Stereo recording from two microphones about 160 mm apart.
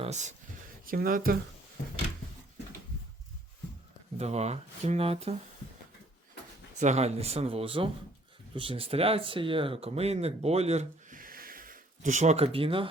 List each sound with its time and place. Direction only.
0.0 s speech: 45° right (ahead or behind)
0.9 s speech: 60° right (ahead or behind)
4.2 s speech: 45° right (ahead or behind)
6.7 s speech: 45° right (ahead or behind)